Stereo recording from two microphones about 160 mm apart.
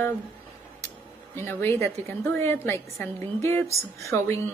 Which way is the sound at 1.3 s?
15° left (ahead or behind).